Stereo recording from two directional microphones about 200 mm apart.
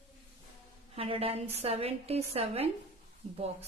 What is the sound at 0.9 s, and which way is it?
A woman's voice, 30° right (ahead or behind).